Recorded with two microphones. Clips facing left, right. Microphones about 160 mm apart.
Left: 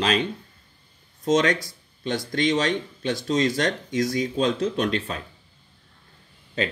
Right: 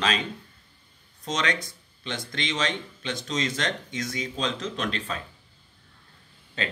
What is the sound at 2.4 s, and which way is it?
Speech, 45° left (ahead or behind).